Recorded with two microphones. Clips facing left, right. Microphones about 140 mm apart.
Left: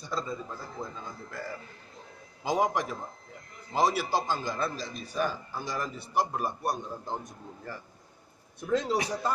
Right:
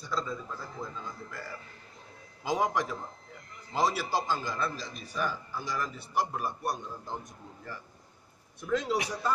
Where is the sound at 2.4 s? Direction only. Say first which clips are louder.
Left 2 dB; 20° left (ahead or behind).